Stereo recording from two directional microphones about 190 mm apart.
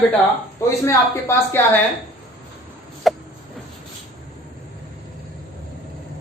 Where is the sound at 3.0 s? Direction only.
Centre (ahead or behind).